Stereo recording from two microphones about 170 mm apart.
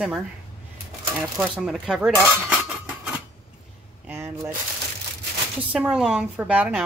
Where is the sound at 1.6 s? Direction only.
5° right (ahead or behind).